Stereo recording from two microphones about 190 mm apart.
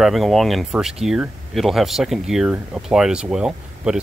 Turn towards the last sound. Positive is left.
turn(degrees=-5)  # may be behind; listen again after turning